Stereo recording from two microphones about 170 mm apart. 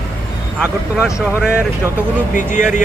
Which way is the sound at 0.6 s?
5° right (ahead or behind).